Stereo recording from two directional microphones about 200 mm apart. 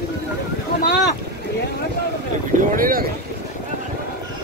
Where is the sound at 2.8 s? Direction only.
45° right (ahead or behind).